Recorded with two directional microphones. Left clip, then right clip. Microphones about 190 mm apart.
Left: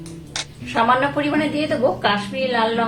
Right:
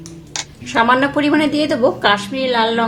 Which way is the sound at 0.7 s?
45° right (ahead or behind).